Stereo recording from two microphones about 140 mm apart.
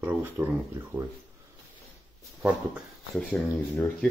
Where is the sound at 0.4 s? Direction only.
10° right (ahead or behind).